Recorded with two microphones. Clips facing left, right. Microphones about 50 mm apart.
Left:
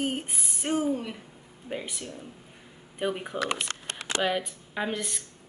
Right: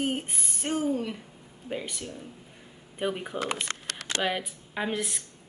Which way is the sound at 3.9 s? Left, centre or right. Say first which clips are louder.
Left 3 dB; left.